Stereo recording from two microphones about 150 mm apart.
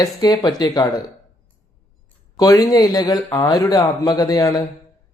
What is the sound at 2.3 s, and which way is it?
A man's voice, 25° left (ahead or behind).